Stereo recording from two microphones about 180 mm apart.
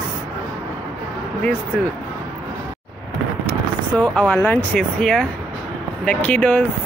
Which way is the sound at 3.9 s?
5° left (ahead or behind).